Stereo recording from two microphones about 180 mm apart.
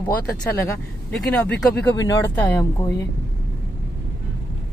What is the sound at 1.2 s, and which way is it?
Speech, 5° left (ahead or behind).